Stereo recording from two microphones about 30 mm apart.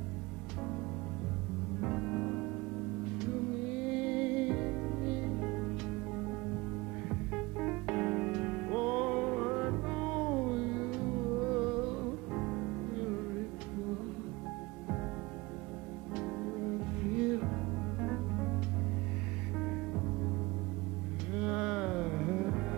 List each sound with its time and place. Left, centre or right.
1.8 s music: centre
4.5 s music: centre
7.8 s music: centre
16.2 s music: centre
21.3 s music: right